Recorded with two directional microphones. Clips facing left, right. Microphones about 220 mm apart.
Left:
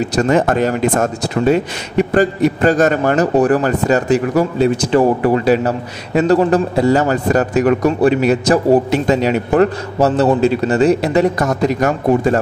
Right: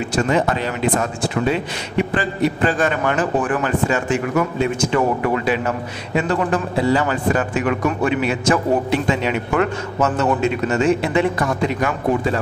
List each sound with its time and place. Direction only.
0.0 s speech: 40° left (ahead or behind)